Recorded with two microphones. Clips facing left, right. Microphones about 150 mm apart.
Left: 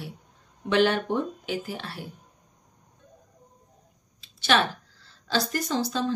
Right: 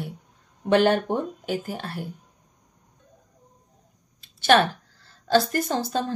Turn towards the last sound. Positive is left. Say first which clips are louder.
# right 1 dB
turn(degrees=-50)  # may be behind; listen again after turning